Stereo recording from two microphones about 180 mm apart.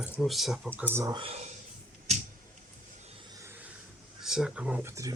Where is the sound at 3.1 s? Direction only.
15° right (ahead or behind).